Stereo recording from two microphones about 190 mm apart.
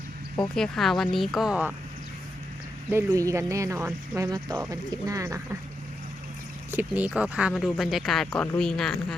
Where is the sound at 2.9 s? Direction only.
15° right (ahead or behind).